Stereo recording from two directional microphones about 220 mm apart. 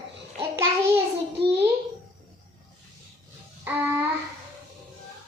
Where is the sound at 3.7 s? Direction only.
10° right (ahead or behind).